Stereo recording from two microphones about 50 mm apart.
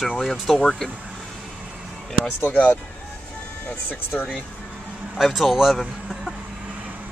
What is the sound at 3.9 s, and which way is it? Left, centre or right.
Speech, left.